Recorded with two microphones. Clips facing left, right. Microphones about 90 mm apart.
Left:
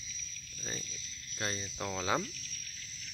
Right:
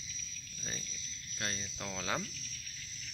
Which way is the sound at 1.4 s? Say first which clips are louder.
Left 3 dB; 5° left (ahead or behind).